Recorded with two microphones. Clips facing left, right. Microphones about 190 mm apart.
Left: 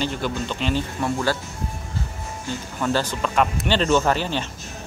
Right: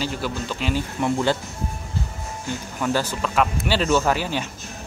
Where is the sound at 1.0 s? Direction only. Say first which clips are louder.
Right 4 dB; 20° right (ahead or behind).